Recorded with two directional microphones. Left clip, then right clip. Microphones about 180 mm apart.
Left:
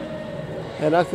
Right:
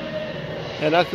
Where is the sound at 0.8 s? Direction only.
25° left (ahead or behind).